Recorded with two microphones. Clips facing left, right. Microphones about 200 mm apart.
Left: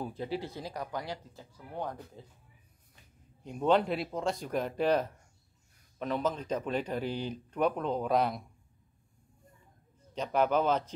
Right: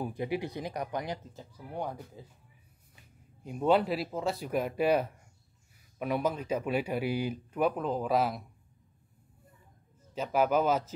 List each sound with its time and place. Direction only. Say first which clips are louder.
0.0 s speech: right 3 dB; 15° right (ahead or behind)
3.4 s speech: right 1 dB; 5° right (ahead or behind)
10.1 s speech: right 1 dB; 5° right (ahead or behind)